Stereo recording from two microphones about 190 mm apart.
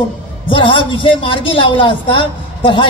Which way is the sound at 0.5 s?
25° left (ahead or behind).